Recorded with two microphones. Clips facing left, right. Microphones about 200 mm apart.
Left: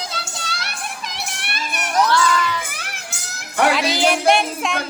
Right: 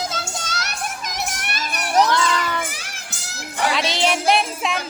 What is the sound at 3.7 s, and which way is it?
Music, centre (ahead or behind).